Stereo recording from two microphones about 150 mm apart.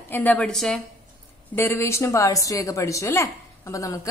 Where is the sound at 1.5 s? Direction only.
15° left (ahead or behind).